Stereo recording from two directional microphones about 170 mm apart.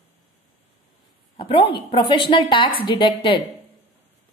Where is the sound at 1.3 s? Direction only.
30° left (ahead or behind).